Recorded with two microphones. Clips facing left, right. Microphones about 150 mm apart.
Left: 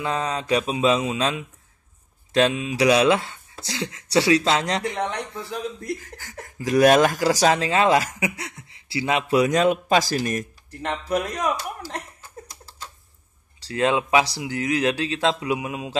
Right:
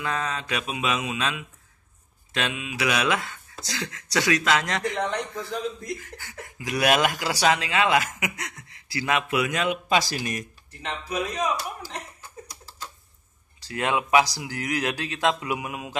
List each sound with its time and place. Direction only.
0.0 s speech: 30° left (ahead or behind)
10.8 s speech: 65° left (ahead or behind)
13.6 s speech: 30° left (ahead or behind)